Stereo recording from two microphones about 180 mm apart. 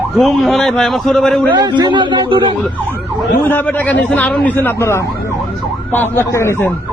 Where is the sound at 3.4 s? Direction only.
10° left (ahead or behind).